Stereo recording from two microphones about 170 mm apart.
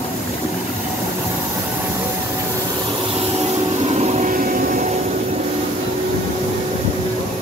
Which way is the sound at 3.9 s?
40° right (ahead or behind).